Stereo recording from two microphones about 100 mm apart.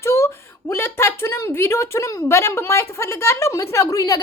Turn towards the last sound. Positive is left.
turn(degrees=35)  # may be behind; listen again after turning